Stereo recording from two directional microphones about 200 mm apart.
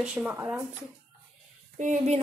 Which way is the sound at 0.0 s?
5° right (ahead or behind).